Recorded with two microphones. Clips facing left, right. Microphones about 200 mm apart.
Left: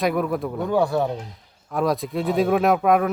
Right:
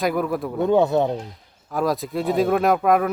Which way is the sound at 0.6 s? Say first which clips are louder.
Right 4 dB; 20° right (ahead or behind).